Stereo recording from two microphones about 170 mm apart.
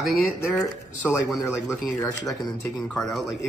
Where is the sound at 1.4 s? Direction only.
15° left (ahead or behind).